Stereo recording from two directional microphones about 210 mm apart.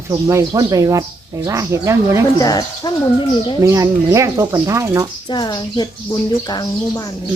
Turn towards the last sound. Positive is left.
turn(degrees=20)  # may be behind; listen again after turning